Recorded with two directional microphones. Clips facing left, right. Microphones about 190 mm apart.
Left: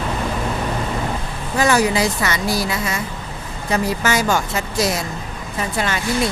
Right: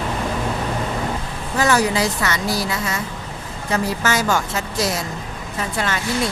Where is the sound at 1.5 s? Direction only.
15° left (ahead or behind).